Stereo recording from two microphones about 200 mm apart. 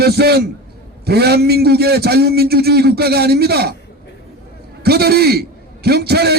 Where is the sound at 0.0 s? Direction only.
50° right (ahead or behind).